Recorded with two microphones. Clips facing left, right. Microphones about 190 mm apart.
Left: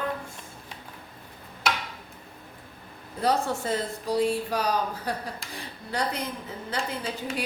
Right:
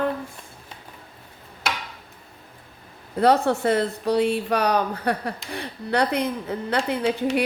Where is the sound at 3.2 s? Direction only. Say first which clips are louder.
Right 7 dB; 65° right (ahead or behind).